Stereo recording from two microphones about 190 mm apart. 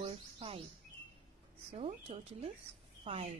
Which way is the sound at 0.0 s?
30° right (ahead or behind).